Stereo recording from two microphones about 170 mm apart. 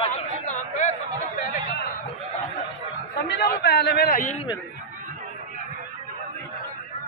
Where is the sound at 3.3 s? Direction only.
75° left (ahead or behind); by 4.4 s 50° left (ahead or behind).